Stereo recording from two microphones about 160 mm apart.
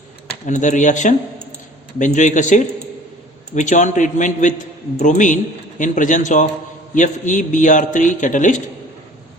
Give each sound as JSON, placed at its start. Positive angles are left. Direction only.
{"t": 0.4, "sound": "a man's voice", "side_deg": 50}